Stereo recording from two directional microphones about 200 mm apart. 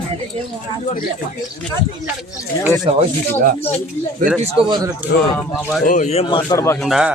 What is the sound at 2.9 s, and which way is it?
Speech, 30° right (ahead or behind).